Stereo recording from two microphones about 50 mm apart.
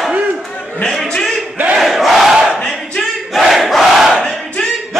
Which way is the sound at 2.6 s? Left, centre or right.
Centre.